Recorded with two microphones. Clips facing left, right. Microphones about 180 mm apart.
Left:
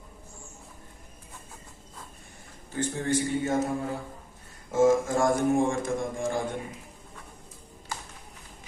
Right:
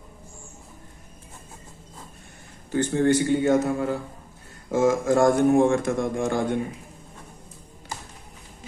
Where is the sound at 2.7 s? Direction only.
75° right (ahead or behind).